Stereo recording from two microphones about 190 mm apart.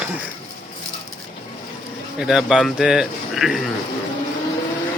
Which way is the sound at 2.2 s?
Centre (ahead or behind).